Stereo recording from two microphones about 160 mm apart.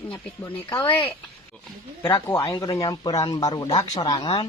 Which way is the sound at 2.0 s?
15° left (ahead or behind).